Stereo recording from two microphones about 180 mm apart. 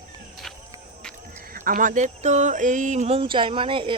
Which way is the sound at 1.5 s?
50° right (ahead or behind).